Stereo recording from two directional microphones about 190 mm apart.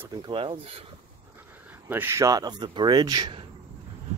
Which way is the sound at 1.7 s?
10° right (ahead or behind).